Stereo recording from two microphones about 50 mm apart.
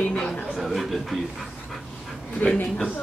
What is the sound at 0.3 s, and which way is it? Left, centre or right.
Speech, centre.